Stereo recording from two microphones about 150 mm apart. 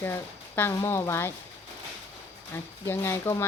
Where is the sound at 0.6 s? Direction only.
15° left (ahead or behind).